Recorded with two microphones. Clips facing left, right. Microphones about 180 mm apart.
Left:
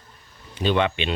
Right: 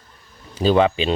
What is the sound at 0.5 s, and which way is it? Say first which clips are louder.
Speech: right 6 dB; 35° right (ahead or behind).